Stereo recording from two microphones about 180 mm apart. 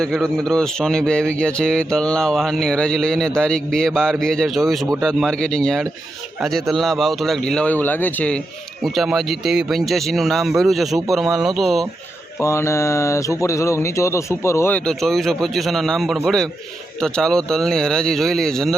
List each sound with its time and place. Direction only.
0.0 s a man's voice: centre (ahead or behind)
12.4 s speech: 15° left (ahead or behind)
14.8 s a man's voice: centre (ahead or behind)